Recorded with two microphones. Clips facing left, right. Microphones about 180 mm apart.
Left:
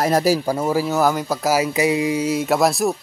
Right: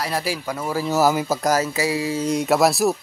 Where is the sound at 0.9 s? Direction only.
5° right (ahead or behind).